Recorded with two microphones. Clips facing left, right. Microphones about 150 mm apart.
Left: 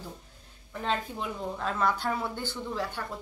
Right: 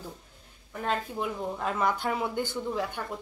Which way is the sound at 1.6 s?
10° right (ahead or behind).